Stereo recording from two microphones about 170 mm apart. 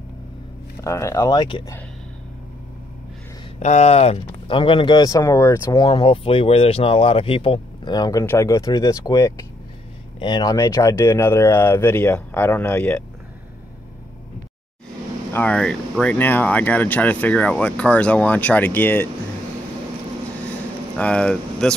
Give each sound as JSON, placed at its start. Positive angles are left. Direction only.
{"t": 0.8, "sound": "speech", "side_deg": 15}
{"t": 3.5, "sound": "speech", "side_deg": 40}
{"t": 15.3, "sound": "speech", "side_deg": 5}
{"t": 20.9, "sound": "speech", "side_deg": 5}